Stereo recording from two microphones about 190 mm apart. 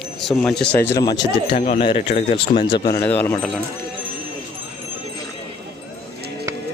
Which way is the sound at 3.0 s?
10° left (ahead or behind).